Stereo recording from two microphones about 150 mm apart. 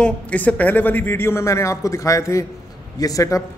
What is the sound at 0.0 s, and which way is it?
A man's voice, 10° left (ahead or behind).